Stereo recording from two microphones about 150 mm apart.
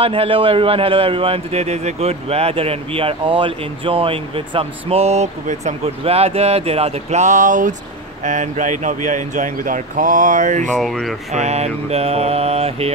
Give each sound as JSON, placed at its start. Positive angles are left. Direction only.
{"t": 0.0, "sound": "a man's voice", "side_deg": -40}
{"t": 10.7, "sound": "speech", "side_deg": 0}
{"t": 11.3, "sound": "mantra", "side_deg": -45}